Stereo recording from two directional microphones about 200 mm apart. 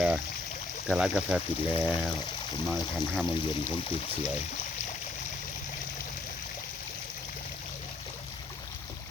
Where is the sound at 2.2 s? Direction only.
20° left (ahead or behind).